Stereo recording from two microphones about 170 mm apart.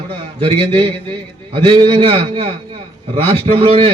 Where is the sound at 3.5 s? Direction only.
35° right (ahead or behind).